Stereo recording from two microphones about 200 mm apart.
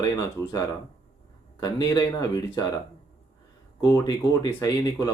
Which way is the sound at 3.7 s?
20° left (ahead or behind).